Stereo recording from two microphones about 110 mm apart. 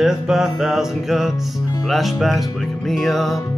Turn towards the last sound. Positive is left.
turn(degrees=0)  # may be behind; listen again after turning